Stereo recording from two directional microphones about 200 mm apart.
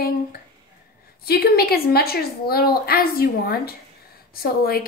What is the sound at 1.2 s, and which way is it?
A woman's voice, 50° left (ahead or behind).